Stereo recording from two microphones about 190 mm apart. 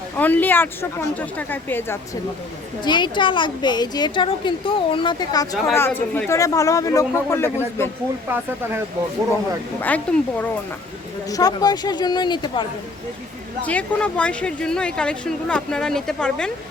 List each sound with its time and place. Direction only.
0.2 s speech: 10° left (ahead or behind)
2.8 s a woman's voice: 25° left (ahead or behind)
9.8 s speech: 10° left (ahead or behind)
11.3 s a woman's voice: 20° left (ahead or behind)
13.7 s speech: 5° left (ahead or behind)